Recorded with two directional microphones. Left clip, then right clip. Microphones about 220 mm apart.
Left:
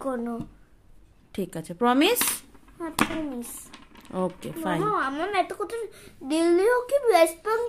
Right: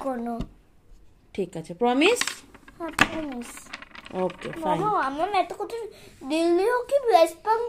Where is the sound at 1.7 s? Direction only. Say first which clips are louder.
Left 1 dB; 25° left (ahead or behind).